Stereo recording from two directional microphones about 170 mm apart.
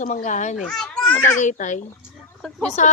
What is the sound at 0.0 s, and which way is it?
Speech, 50° left (ahead or behind).